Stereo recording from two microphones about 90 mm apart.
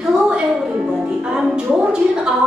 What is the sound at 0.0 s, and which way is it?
Music, 5° right (ahead or behind).